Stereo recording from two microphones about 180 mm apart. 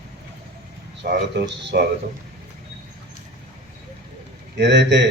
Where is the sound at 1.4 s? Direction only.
80° right.